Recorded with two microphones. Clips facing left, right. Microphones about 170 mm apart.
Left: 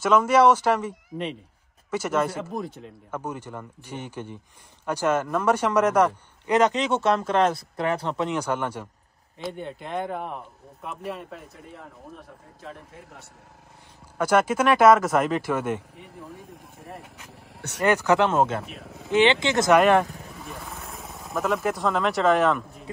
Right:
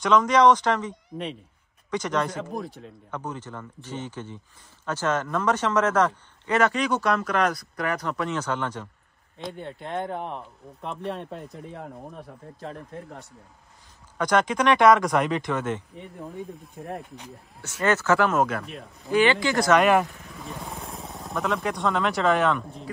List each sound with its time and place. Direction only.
0.0 s a man's voice: 5° left (ahead or behind); by 8.3 s 30° left (ahead or behind)
8.3 s speech: 10° left (ahead or behind)
14.1 s speech: 5° left (ahead or behind)
17.6 s speech: 65° left (ahead or behind)
17.8 s a man's voice: 15° left (ahead or behind)
19.8 s speech: centre (ahead or behind)